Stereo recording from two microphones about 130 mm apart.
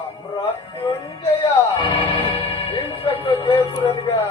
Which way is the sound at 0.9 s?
40° left (ahead or behind).